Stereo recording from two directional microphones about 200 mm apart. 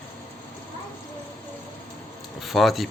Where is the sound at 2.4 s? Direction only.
Centre (ahead or behind).